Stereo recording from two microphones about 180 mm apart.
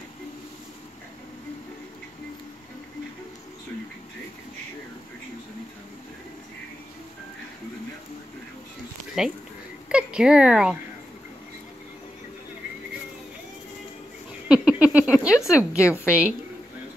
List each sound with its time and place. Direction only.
9.2 s speech: 5° right (ahead or behind)
14.5 s a woman's voice: 5° right (ahead or behind)